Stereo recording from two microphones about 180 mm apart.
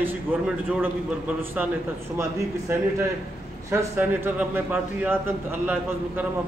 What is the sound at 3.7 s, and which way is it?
A man's voice, 10° right (ahead or behind).